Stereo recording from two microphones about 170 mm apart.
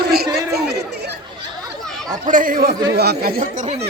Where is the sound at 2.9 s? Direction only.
70° right (ahead or behind).